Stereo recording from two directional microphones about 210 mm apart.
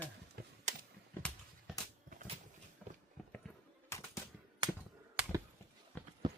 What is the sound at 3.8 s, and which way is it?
Typewriter, 15° left (ahead or behind).